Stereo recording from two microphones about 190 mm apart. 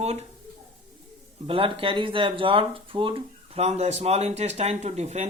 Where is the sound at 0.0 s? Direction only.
35° right (ahead or behind).